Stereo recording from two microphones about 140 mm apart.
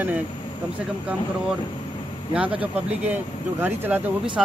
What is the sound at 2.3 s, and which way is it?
Speech, 10° right (ahead or behind).